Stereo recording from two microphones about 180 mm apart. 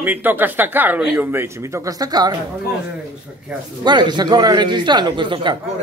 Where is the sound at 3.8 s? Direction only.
25° right (ahead or behind).